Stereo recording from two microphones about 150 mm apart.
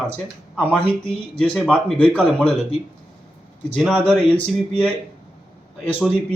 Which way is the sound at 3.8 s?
5° left (ahead or behind).